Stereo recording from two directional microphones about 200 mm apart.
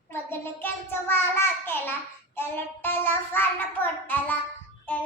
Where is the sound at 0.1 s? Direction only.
10° left (ahead or behind).